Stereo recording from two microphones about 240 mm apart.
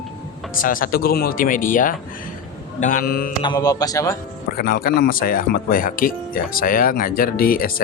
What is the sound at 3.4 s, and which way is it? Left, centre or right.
Speech, centre.